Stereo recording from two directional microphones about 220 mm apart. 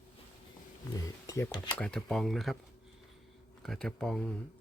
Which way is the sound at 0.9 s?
15° left (ahead or behind).